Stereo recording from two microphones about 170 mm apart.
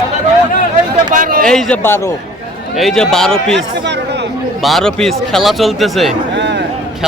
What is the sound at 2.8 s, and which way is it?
Speech, centre (ahead or behind).